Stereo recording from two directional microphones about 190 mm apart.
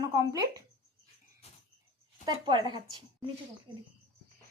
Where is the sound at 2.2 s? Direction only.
25° right (ahead or behind).